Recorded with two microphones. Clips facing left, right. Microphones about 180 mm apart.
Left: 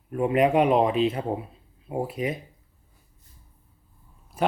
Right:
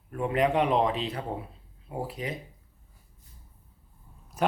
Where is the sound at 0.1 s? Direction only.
20° left (ahead or behind).